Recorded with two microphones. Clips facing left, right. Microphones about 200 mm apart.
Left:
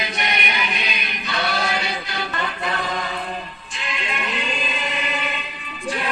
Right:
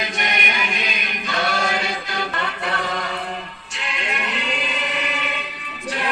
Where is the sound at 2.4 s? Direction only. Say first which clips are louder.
Even; 70° right (ahead or behind).